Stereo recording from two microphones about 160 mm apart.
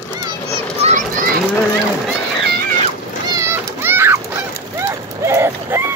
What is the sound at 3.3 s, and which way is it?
Children playing, 15° right (ahead or behind).